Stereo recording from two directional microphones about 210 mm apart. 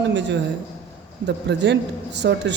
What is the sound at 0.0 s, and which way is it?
Speech, 55° right (ahead or behind).